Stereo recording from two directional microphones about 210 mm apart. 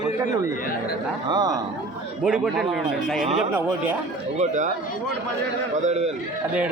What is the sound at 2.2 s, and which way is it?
Speech, 5° right (ahead or behind).